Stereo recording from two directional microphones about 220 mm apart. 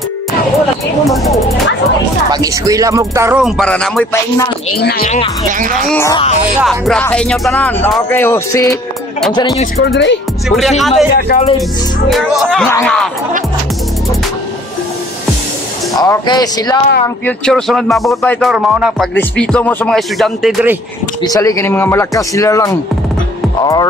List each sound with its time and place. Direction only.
1.0 s music: centre (ahead or behind)
2.3 s speech: 15° right (ahead or behind)
3.4 s speech: centre (ahead or behind)
4.8 s speech: 45° left (ahead or behind)
5.5 s speech: 35° right (ahead or behind)
5.9 s speech: 10° left (ahead or behind)
10.5 s speech: centre (ahead or behind)
11.1 s speech: 45° left (ahead or behind)
12.1 s speech: centre (ahead or behind)
16.0 s speech: 15° left (ahead or behind)
17.5 s speech: centre (ahead or behind)
21.2 s speech: 15° left (ahead or behind)